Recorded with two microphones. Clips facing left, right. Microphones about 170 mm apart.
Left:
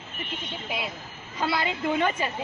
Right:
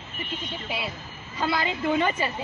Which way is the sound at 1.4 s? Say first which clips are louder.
Right 1 dB; 5° left (ahead or behind).